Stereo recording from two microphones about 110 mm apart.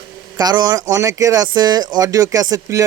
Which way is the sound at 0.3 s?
40° right (ahead or behind).